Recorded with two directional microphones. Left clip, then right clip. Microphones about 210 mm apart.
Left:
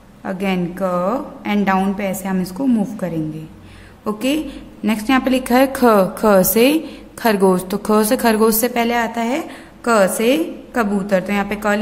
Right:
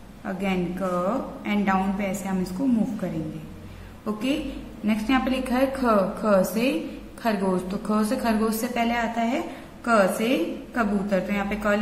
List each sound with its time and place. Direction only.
0.2 s a woman's voice: 45° left (ahead or behind)